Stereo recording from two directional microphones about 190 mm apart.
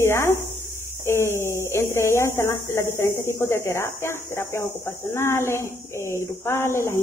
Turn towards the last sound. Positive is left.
turn(degrees=15)  # may be behind; listen again after turning